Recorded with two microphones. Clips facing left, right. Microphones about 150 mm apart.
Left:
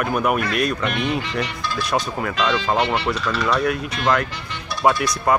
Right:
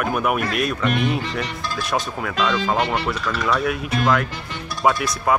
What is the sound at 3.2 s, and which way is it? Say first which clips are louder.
Speech: left 2 dB; 50° right (ahead or behind).